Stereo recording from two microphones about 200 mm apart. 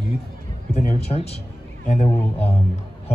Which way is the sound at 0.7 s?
35° left (ahead or behind).